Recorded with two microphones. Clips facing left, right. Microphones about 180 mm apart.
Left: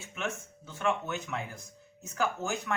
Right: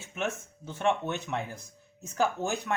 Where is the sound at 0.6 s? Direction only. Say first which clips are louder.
Right 3 dB; 30° right (ahead or behind).